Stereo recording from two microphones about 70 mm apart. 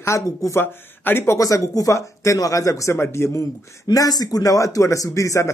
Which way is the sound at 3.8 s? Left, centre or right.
Left.